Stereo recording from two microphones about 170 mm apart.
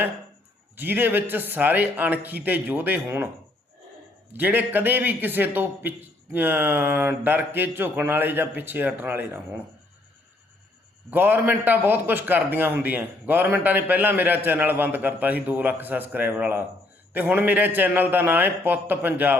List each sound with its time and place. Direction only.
0.8 s a man's voice: 10° right (ahead or behind)
4.3 s a man's voice: 10° right (ahead or behind)
11.1 s a man's voice: 10° right (ahead or behind)